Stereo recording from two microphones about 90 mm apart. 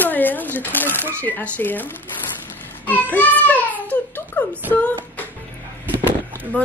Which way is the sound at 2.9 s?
20° left (ahead or behind).